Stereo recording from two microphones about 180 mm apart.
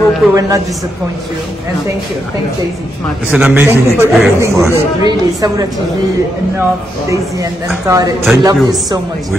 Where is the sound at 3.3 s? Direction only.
10° right (ahead or behind).